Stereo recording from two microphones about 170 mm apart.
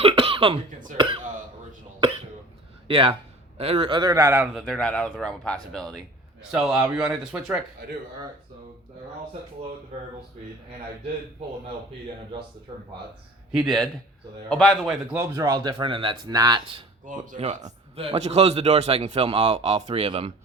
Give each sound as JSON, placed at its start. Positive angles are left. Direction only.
{"t": 0.0, "sound": "cough", "side_deg": -35}
{"t": 2.8, "sound": "a man's voice", "side_deg": -30}
{"t": 4.5, "sound": "speech", "side_deg": 0}
{"t": 6.5, "sound": "speech", "side_deg": -5}
{"t": 13.7, "sound": "speech", "side_deg": 5}
{"t": 15.2, "sound": "speech", "side_deg": -20}
{"t": 17.1, "sound": "a man's voice", "side_deg": -50}